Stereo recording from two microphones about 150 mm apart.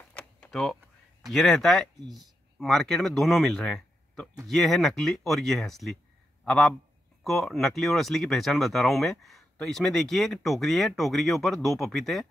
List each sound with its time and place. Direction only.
0.1 s power windows: 5° left (ahead or behind)
1.3 s speech: centre (ahead or behind)